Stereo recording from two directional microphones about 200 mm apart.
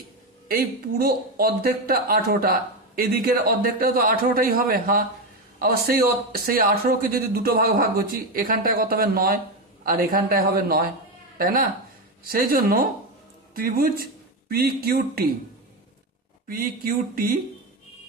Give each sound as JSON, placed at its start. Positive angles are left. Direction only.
{"t": 0.4, "sound": "speech", "side_deg": -50}
{"t": 16.5, "sound": "speech", "side_deg": -45}